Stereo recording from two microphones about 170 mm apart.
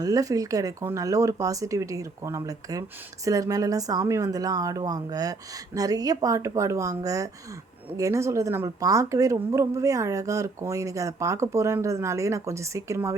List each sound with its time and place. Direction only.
0.0 s a woman's voice: 20° right (ahead or behind)